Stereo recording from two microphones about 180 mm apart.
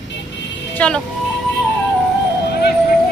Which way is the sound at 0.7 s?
5° left (ahead or behind).